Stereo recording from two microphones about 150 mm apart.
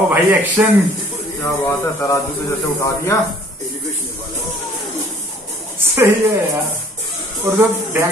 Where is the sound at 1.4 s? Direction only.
15° left (ahead or behind).